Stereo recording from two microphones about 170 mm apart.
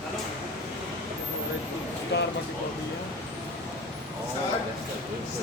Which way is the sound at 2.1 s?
85° left.